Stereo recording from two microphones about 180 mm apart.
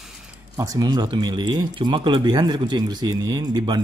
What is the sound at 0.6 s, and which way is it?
Speech, 20° right (ahead or behind).